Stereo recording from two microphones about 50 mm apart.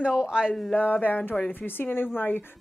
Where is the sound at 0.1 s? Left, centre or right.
Centre.